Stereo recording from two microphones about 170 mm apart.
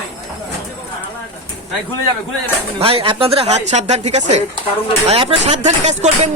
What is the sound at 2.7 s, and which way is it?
Speech, 35° right (ahead or behind).